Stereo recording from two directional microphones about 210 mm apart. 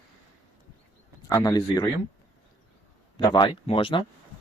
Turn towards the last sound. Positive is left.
turn(degrees=25)  # may be behind; listen again after turning